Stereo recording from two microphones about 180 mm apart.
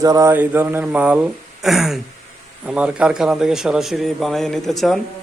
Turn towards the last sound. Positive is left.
turn(degrees=0)  # may be behind; listen again after turning